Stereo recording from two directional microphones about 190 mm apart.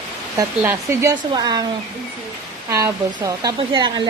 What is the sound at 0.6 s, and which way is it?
A woman's voice, 15° right (ahead or behind).